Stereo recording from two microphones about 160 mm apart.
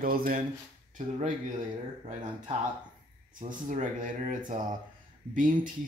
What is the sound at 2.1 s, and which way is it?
Speech, 50° right (ahead or behind).